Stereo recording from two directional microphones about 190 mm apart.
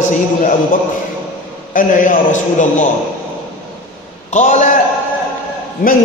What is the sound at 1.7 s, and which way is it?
Speech, 45° left (ahead or behind).